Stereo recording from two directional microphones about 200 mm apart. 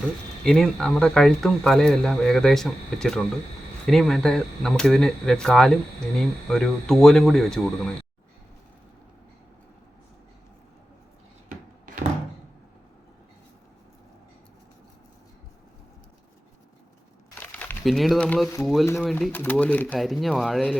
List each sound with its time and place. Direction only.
0.4 s speech: 5° left (ahead or behind)
11.4 s a sound: 40° right (ahead or behind)
17.3 s crumpling: 10° left (ahead or behind)
18.6 s speech: centre (ahead or behind)